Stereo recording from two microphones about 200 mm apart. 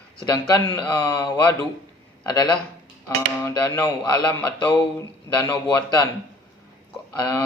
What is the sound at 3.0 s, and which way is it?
A man's voice, 15° left (ahead or behind).